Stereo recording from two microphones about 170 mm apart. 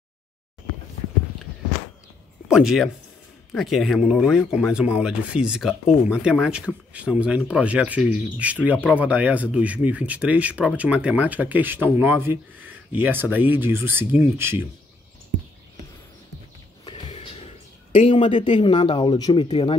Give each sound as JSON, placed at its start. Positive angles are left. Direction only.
{"t": 2.4, "sound": "speech", "side_deg": -5}
{"t": 16.8, "sound": "music", "side_deg": 35}
{"t": 18.1, "sound": "speech", "side_deg": 30}